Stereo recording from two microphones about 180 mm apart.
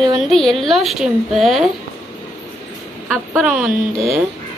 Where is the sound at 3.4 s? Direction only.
5° right (ahead or behind).